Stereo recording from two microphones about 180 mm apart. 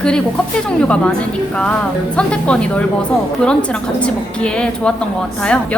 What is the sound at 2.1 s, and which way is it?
A woman's voice, 5° left (ahead or behind).